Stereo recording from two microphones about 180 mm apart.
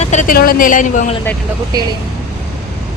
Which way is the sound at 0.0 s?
40° left (ahead or behind).